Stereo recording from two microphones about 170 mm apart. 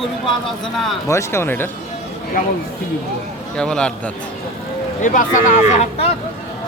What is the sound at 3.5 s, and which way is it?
Speech, 5° left (ahead or behind).